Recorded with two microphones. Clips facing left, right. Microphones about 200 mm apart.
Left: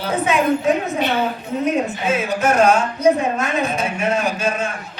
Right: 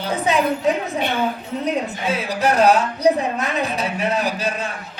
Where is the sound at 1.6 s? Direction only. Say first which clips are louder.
Left 3 dB; 35° right (ahead or behind).